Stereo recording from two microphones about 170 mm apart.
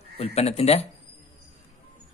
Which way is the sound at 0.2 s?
35° left (ahead or behind).